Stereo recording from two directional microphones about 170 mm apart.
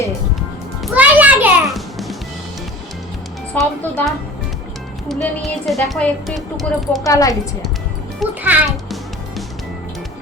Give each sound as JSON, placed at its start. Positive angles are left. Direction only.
{"t": 0.9, "sound": "music", "side_deg": -10}
{"t": 3.5, "sound": "speech", "side_deg": 5}
{"t": 7.0, "sound": "a woman's voice", "side_deg": 20}
{"t": 8.4, "sound": "a child's voice", "side_deg": -10}